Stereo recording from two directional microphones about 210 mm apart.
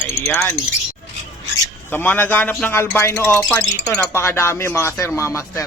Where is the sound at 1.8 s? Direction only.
10° left (ahead or behind).